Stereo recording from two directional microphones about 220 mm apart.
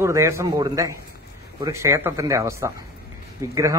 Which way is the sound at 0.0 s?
15° right (ahead or behind).